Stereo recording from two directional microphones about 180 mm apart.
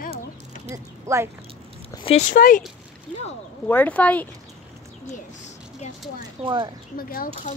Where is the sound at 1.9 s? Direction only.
35° left (ahead or behind).